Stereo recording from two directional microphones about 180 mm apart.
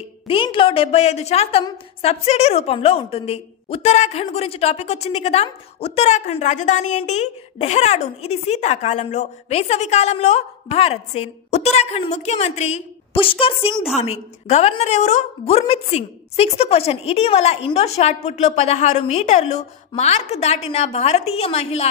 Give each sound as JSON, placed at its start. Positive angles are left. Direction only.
{"t": 0.3, "sound": "a woman's voice", "side_deg": 30}